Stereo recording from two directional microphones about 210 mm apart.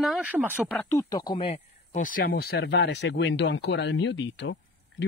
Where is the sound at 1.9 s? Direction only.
40° left (ahead or behind).